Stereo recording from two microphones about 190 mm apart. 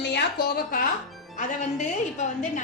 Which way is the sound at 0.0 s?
60° left (ahead or behind).